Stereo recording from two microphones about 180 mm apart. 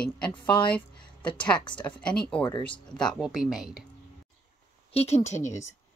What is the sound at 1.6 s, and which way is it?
Speech, 25° left (ahead or behind).